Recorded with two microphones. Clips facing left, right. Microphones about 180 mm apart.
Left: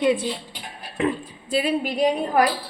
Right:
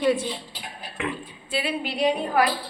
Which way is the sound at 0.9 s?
35° left (ahead or behind).